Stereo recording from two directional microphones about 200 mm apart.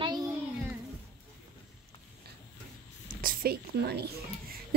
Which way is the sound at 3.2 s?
45° right (ahead or behind).